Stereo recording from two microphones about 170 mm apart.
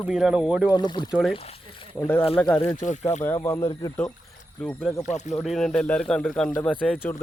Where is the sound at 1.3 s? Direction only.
35° left (ahead or behind).